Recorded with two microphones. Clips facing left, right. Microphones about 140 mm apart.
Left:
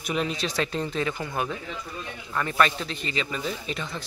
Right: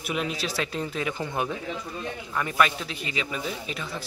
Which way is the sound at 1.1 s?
25° right (ahead or behind).